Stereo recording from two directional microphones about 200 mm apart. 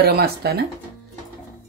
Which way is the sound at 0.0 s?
50° right (ahead or behind).